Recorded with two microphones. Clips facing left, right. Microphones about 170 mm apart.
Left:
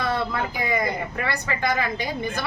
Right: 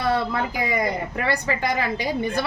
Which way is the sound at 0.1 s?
35° right (ahead or behind).